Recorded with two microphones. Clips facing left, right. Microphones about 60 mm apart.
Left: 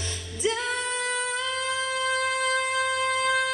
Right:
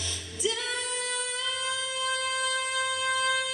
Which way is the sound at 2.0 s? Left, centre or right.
Left.